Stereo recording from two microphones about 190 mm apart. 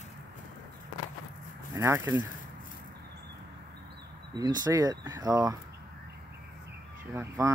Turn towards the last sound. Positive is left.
turn(degrees=-15)  # may be behind; listen again after turning